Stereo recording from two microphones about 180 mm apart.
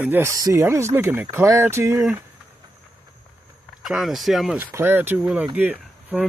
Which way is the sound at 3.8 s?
Centre (ahead or behind).